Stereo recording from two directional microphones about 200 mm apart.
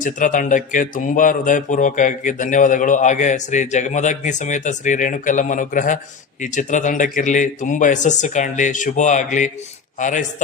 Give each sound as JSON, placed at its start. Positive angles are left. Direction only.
{"t": 0.0, "sound": "speech", "side_deg": 40}